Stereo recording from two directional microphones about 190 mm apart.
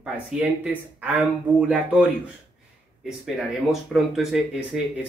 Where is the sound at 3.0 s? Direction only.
5° right (ahead or behind).